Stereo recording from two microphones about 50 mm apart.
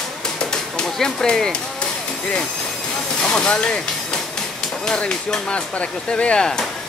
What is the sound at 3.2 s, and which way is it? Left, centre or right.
Speech, centre.